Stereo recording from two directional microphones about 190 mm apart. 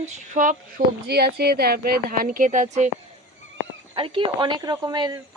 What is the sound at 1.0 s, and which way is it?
Speech, 55° right (ahead or behind).